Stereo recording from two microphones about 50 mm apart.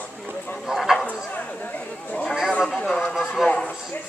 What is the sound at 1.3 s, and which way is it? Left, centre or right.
Chatter, left.